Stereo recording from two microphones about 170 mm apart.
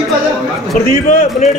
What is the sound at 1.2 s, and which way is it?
Speech, 40° left (ahead or behind).